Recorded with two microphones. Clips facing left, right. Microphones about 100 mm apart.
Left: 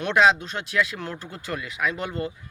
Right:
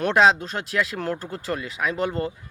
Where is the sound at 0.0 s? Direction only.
35° right (ahead or behind).